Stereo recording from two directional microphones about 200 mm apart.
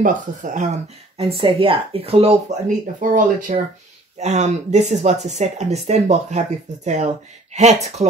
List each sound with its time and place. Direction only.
0.0 s speech: 40° right (ahead or behind)
3.0 s speech: 40° right (ahead or behind)